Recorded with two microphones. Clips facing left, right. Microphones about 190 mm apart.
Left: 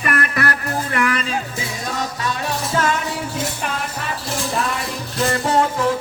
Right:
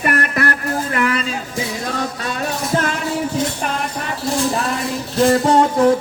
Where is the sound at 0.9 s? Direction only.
40° right (ahead or behind).